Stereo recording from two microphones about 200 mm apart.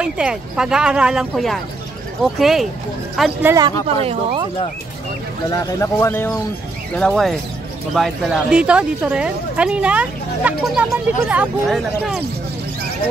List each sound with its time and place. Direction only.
0.0 s speech: 5° right (ahead or behind)
3.8 s speech: 30° right (ahead or behind)
5.6 s a man's voice: 15° left (ahead or behind)
7.0 s speech: centre (ahead or behind)